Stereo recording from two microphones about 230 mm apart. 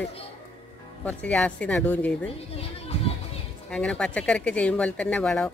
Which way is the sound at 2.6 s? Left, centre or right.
Left.